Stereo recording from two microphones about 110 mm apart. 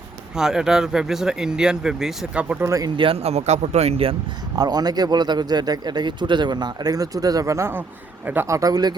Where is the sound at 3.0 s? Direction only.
60° right (ahead or behind).